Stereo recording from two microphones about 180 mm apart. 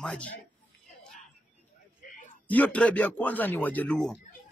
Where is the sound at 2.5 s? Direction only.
10° left (ahead or behind).